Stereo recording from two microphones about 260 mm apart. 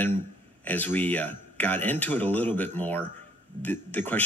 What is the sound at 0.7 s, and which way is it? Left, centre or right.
Speech, centre.